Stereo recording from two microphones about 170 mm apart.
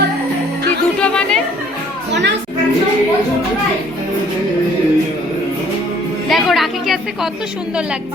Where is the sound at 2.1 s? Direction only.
90° right.